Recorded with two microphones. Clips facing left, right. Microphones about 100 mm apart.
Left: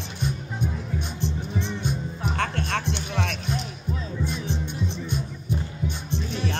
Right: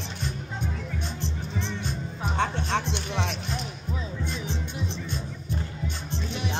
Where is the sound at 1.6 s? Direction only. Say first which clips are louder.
Left 3 dB; 15° left (ahead or behind).